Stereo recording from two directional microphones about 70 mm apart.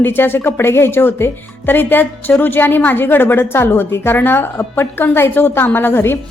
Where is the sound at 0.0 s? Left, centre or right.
Left.